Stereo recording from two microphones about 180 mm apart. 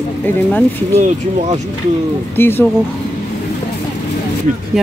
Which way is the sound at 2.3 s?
10° left (ahead or behind).